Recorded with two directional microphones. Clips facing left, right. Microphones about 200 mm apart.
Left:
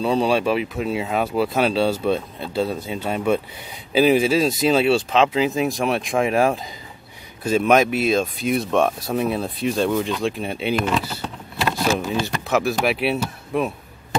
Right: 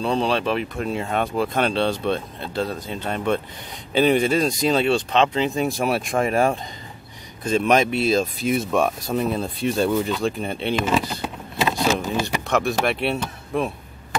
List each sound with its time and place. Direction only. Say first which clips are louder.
0.0 s speech: left 3 dB; 5° left (ahead or behind)
11.9 s speech: left 1 dB; 15° right (ahead or behind)
12.4 s speech: left 2 dB; 5° left (ahead or behind)